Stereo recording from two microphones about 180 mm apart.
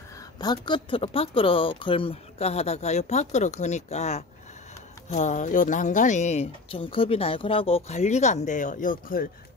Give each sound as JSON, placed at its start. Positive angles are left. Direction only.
{"t": 0.4, "sound": "speech", "side_deg": 25}